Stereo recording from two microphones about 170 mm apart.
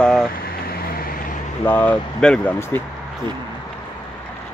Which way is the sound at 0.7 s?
60° left (ahead or behind).